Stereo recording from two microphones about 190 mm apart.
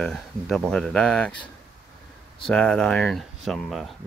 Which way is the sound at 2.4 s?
5° left (ahead or behind).